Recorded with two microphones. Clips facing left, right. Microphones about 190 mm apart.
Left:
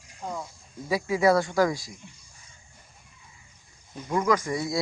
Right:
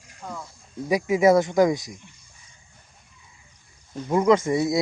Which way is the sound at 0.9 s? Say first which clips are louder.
Right 4 dB; 20° right (ahead or behind).